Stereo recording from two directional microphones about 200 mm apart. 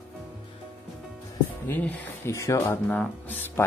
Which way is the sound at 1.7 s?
10° left (ahead or behind).